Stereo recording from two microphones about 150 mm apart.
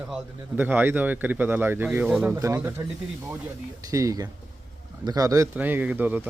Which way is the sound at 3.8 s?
25° right (ahead or behind).